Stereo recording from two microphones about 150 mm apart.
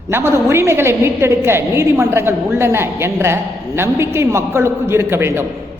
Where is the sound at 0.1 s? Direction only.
15° right (ahead or behind).